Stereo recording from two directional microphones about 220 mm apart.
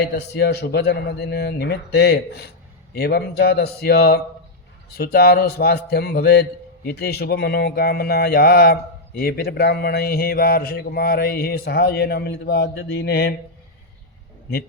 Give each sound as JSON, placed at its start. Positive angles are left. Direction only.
{"t": 0.0, "sound": "speech", "side_deg": 50}